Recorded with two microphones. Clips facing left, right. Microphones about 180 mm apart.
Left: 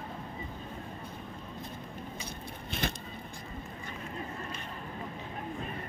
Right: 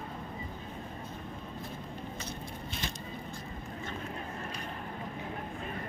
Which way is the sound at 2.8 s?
55° left (ahead or behind).